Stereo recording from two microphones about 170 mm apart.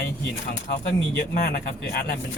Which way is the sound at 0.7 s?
65° left (ahead or behind).